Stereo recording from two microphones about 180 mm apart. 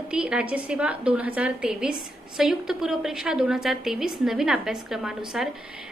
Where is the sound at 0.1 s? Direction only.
5° right (ahead or behind).